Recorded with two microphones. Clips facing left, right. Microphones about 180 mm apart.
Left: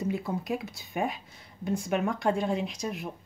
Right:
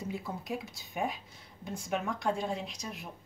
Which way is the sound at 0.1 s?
65° left (ahead or behind).